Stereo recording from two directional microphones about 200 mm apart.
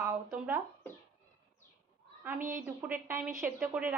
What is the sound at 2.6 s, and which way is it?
A woman's voice, 10° right (ahead or behind).